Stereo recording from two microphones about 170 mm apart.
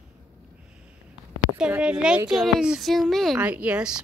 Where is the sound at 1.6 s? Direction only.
5° right (ahead or behind).